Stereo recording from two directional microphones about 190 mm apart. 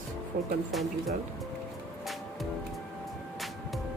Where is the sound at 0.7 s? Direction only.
Centre (ahead or behind).